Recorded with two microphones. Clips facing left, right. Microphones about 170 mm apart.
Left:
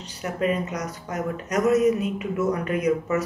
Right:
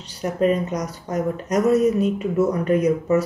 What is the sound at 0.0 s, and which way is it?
Speech, 40° right (ahead or behind).